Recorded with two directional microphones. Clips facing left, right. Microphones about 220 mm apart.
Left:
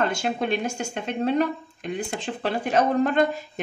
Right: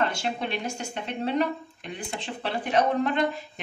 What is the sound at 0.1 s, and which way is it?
Speech, 45° left (ahead or behind).